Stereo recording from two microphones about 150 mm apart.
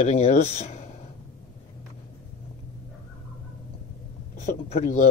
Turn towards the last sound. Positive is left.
turn(degrees=55)  # may be behind; listen again after turning